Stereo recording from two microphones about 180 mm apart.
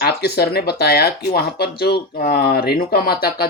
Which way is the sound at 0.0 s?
60° left (ahead or behind).